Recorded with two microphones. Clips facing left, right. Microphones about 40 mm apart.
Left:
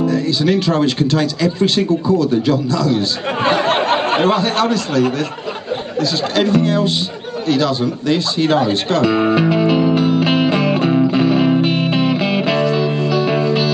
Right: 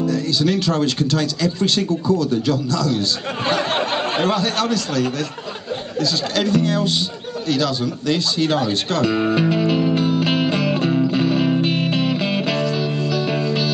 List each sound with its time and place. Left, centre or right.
0.0 s speech: centre
7.4 s music: centre